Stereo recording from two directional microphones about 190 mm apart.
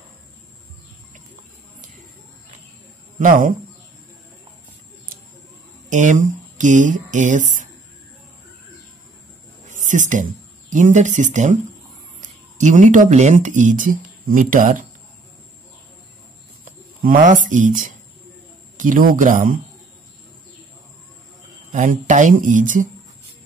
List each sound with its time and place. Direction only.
1.1 s a sound: 45° right (ahead or behind)
3.2 s speech: 45° right (ahead or behind)
5.9 s speech: 40° right (ahead or behind)
9.8 s speech: 40° right (ahead or behind)
16.6 s speech: 45° right (ahead or behind)
21.7 s speech: 40° right (ahead or behind)